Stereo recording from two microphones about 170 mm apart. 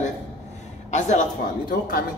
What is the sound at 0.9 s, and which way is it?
Speech, 45° left (ahead or behind).